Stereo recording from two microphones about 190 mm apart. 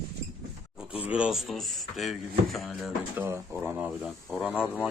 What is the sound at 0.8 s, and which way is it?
Speech, 5° right (ahead or behind).